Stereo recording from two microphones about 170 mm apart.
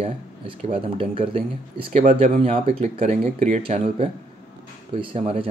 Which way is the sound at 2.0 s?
45° right (ahead or behind).